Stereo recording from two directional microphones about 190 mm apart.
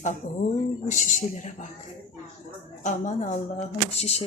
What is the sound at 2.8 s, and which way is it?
Speech, 35° left (ahead or behind).